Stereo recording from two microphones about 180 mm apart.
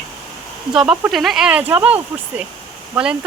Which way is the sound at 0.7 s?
5° right (ahead or behind).